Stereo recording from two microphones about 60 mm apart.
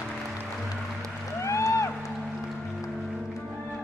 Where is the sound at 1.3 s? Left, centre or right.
Left.